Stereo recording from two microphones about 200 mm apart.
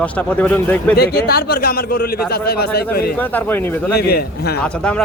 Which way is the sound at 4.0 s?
50° left (ahead or behind).